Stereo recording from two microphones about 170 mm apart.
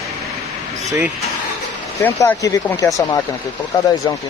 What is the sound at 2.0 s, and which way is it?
Speech, 15° left (ahead or behind).